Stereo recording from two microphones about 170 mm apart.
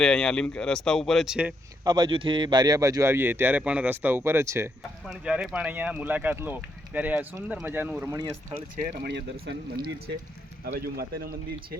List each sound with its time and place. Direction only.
0.0 s speech: 5° left (ahead or behind)
1.8 s speech: 25° right (ahead or behind)
9.5 s speech: 90° right
10.8 s speech: 65° right (ahead or behind)